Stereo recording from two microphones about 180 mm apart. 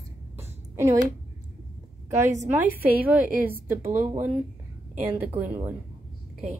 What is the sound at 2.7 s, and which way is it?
Speech, 10° right (ahead or behind).